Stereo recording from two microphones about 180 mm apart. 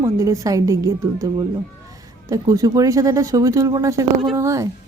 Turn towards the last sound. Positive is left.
turn(degrees=-15)  # may be behind; listen again after turning